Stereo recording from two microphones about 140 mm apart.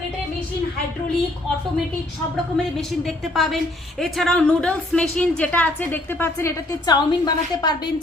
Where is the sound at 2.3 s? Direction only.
Centre (ahead or behind).